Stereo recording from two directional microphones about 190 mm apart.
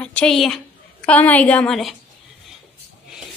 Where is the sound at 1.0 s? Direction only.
10° left (ahead or behind).